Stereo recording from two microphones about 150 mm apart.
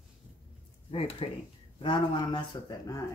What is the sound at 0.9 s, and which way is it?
Speech, 40° left (ahead or behind).